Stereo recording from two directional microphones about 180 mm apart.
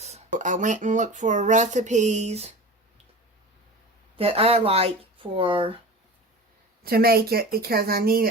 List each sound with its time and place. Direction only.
0.0 s speech: 40° right (ahead or behind)
4.2 s speech: 30° right (ahead or behind)
6.8 s speech: 55° right (ahead or behind)